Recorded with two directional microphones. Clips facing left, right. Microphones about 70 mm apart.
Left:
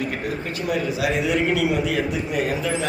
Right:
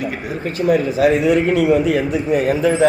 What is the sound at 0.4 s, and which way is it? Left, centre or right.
A man's voice, right.